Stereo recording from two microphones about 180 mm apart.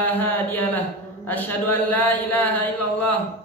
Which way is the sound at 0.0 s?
10° left (ahead or behind).